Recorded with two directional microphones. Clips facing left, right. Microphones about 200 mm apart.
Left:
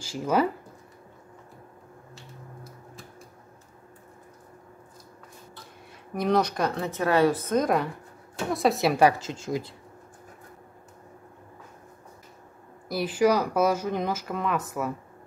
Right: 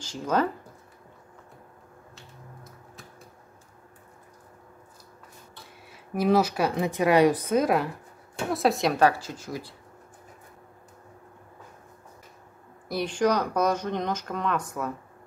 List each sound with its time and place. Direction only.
0.0 s speech: 10° left (ahead or behind)
6.1 s a woman's voice: 5° right (ahead or behind)
9.2 s speech: 25° left (ahead or behind)
12.8 s speech: 5° left (ahead or behind)